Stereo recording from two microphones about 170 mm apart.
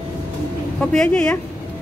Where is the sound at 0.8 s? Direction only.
5° left (ahead or behind).